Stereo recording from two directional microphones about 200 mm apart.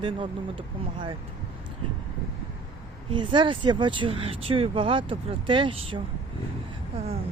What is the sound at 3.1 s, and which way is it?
Speech, 25° right (ahead or behind).